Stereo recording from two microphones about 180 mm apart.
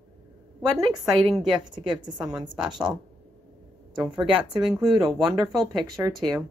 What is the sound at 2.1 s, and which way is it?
Speech, 5° right (ahead or behind).